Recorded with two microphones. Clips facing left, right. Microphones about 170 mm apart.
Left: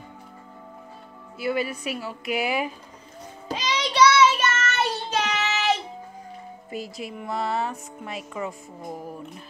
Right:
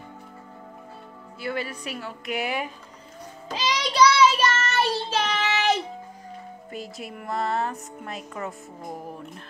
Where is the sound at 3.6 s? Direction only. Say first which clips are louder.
Even; 35° right (ahead or behind).